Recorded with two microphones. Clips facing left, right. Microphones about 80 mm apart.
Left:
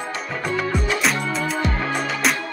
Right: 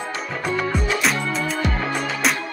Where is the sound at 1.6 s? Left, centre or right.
Centre.